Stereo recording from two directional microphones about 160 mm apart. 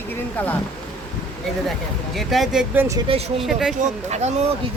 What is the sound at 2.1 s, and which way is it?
Speech, centre (ahead or behind).